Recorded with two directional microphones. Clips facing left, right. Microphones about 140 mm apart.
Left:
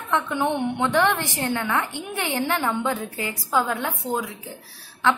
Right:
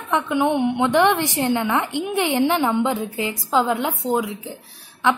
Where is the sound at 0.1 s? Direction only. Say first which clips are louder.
Right 4 dB; 15° right (ahead or behind).